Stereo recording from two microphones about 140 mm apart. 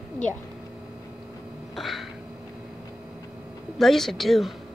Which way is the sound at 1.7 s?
Centre (ahead or behind).